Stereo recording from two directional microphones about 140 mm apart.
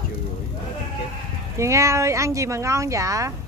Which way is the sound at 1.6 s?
20° right (ahead or behind).